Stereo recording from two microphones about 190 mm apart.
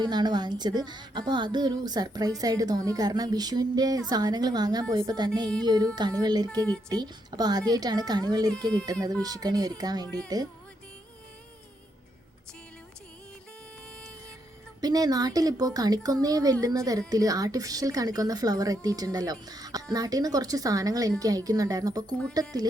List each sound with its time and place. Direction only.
0.0 s a woman's voice: 20° right (ahead or behind)
14.8 s a woman's voice: 20° right (ahead or behind)